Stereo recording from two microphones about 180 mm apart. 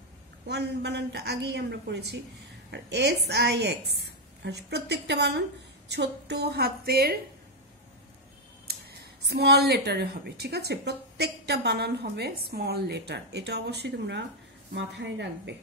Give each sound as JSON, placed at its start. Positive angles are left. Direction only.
{"t": 0.5, "sound": "a woman's voice", "side_deg": -70}
{"t": 8.7, "sound": "a sound", "side_deg": -60}
{"t": 9.2, "sound": "a woman's voice", "side_deg": -65}